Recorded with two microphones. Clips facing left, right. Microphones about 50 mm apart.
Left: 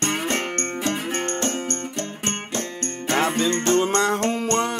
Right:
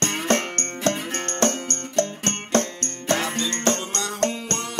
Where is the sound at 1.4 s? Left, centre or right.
Right.